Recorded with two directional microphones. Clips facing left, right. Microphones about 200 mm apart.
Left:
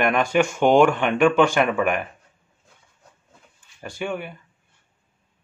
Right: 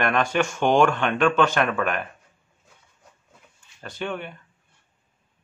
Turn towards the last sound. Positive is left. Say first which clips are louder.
# left 2 dB
turn(degrees=10)  # may be behind; listen again after turning